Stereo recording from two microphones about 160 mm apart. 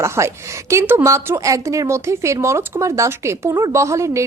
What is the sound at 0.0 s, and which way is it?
A woman's voice, 15° right (ahead or behind).